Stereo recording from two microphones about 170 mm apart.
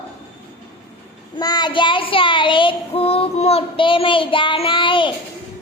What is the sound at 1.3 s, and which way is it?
Child singing, 25° left (ahead or behind).